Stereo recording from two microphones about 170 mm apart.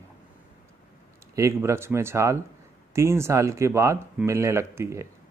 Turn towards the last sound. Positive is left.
turn(degrees=-15)  # may be behind; listen again after turning